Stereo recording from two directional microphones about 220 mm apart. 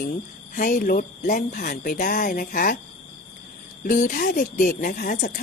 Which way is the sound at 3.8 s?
35° left (ahead or behind).